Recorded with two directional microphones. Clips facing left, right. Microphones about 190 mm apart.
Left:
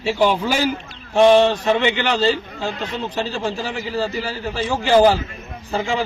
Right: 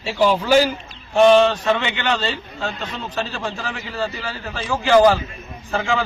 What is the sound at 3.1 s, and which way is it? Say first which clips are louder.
Speech: left 2 dB; 15° left (ahead or behind).